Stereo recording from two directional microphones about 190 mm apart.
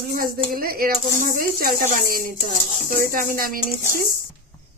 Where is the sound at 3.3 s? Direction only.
50° right (ahead or behind).